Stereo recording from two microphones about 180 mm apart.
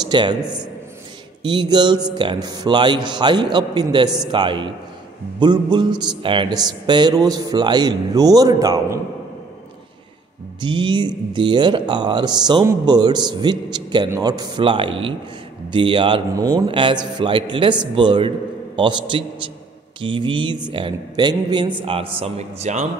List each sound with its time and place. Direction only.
0.1 s speech: 25° right (ahead or behind)
10.6 s a man's voice: 25° right (ahead or behind)